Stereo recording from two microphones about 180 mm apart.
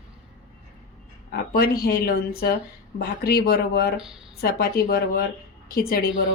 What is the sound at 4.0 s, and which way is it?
Speech, centre (ahead or behind).